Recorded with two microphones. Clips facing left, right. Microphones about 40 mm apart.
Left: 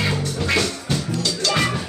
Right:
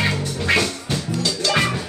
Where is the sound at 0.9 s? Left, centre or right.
Centre.